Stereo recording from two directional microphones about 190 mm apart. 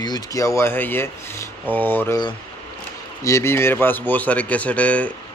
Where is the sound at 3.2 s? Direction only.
15° left (ahead or behind).